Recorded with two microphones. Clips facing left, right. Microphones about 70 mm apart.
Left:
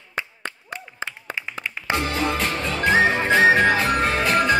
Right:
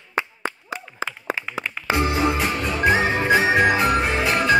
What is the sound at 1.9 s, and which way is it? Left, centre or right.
Music, right.